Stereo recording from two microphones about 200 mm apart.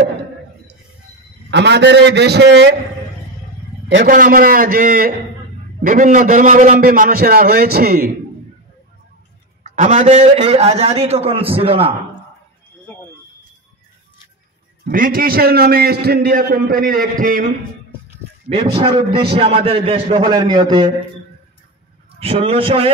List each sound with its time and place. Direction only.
1.5 s a man's voice: 60° right (ahead or behind)
3.9 s a man's voice: 45° right (ahead or behind)
9.6 s a man's voice: 35° right (ahead or behind)
14.9 s a man's voice: 45° right (ahead or behind)
18.8 s a man's voice: 30° right (ahead or behind)
22.2 s a man's voice: 30° right (ahead or behind)